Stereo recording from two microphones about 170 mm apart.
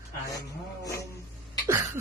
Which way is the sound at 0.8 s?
15° left (ahead or behind).